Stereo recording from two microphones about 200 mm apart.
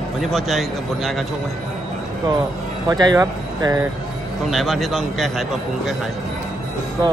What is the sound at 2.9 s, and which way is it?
Speech, 20° right (ahead or behind).